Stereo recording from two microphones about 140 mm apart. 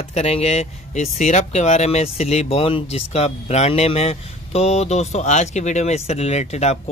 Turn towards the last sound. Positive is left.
turn(degrees=50)  # may be behind; listen again after turning